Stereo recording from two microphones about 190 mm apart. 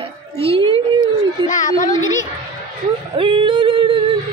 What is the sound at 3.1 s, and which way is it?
Singing, 25° right (ahead or behind).